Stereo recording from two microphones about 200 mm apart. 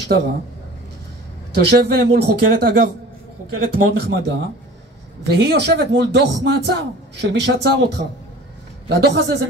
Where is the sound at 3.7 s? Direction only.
55° right (ahead or behind).